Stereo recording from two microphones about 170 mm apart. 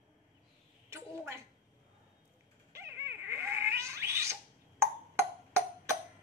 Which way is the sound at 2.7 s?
15° right (ahead or behind).